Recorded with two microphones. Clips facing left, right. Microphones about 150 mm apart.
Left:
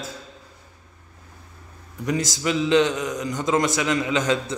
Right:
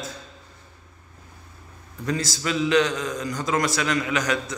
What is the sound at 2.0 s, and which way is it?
A man's voice, 20° left (ahead or behind).